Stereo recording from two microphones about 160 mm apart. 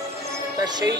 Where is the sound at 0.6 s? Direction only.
25° right (ahead or behind).